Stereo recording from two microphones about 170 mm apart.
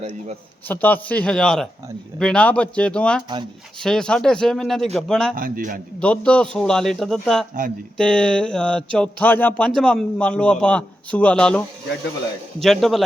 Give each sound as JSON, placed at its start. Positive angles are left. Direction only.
{"t": 0.7, "sound": "speech", "side_deg": 10}
{"t": 5.4, "sound": "a man's voice", "side_deg": -55}
{"t": 6.0, "sound": "speech", "side_deg": 5}